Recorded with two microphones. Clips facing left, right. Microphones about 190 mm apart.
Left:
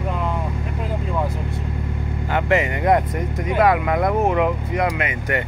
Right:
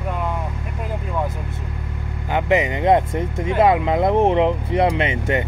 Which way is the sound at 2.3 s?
15° right (ahead or behind).